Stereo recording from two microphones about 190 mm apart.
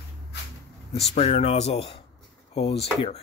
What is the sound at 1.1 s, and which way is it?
Speech, 35° left (ahead or behind).